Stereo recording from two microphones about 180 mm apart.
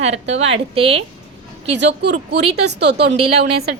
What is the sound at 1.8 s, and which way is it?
A woman's voice, 70° right (ahead or behind).